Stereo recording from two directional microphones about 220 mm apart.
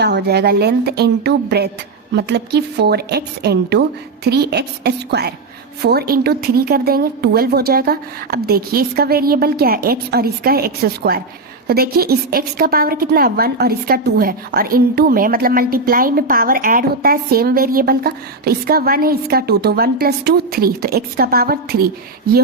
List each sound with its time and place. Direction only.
0.0 s a woman's voice: 45° right (ahead or behind)